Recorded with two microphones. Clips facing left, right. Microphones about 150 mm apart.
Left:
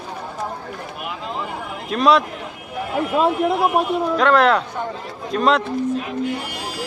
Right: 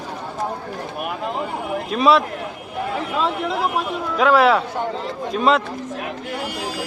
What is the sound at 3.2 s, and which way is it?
Speech, 50° left (ahead or behind).